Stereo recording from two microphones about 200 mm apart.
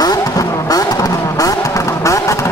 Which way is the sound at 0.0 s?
20° left (ahead or behind).